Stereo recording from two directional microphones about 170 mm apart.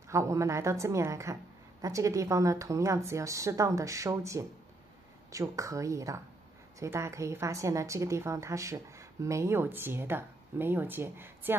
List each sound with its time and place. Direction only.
0.1 s speech: 15° right (ahead or behind)